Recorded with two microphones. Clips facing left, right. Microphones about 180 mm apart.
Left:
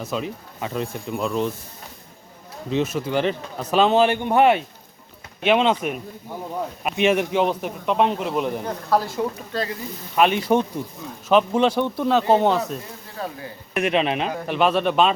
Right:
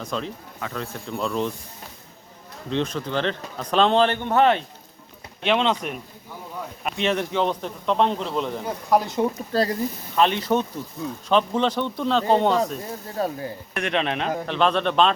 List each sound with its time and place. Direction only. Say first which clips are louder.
0.0 s a man's voice: left 2 dB; 5° left (ahead or behind)
0.6 s a man's voice: left 4 dB; 20° left (ahead or behind)
2.6 s a man's voice: left 3 dB; 5° left (ahead or behind)
8.6 s speech: even; 15° right (ahead or behind)
9.5 s speech: right 4 dB; 35° right (ahead or behind)
10.2 s a man's voice: left 2 dB; 10° left (ahead or behind)
13.1 s speech: right 5 dB; 40° right (ahead or behind)
13.7 s a man's voice: left 4 dB; 5° left (ahead or behind)